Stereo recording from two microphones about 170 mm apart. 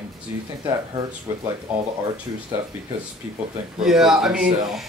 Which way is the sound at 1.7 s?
5° right (ahead or behind).